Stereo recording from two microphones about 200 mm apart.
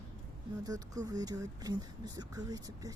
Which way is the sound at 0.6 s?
20° right (ahead or behind).